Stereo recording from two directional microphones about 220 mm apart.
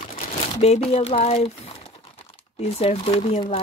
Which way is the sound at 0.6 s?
30° left (ahead or behind).